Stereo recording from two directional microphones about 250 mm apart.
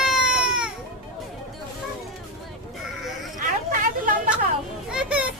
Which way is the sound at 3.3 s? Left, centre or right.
Right.